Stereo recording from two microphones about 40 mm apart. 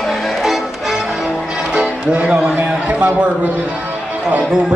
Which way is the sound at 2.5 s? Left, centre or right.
Right.